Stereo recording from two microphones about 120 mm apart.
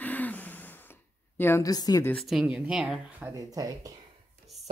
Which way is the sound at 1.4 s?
20° left (ahead or behind).